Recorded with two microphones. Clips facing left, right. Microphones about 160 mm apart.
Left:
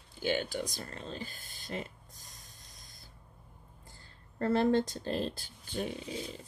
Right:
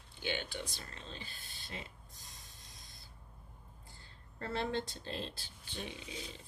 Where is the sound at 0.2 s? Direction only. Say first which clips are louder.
Left 7 dB; 40° left (ahead or behind).